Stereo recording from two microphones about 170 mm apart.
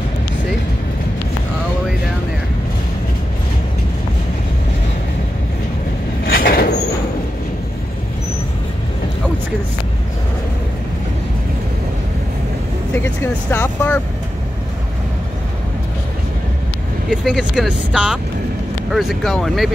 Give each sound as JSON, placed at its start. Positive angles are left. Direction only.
{"t": 6.2, "sound": "vehicle", "side_deg": 60}
{"t": 12.9, "sound": "vehicle", "side_deg": 15}
{"t": 17.1, "sound": "speech", "side_deg": 0}